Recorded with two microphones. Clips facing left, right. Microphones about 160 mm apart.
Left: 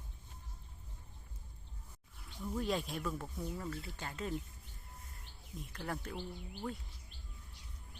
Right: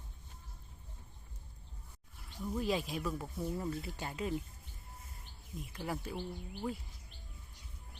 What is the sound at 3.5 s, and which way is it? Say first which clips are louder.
Speech: right 4 dB; 20° right (ahead or behind).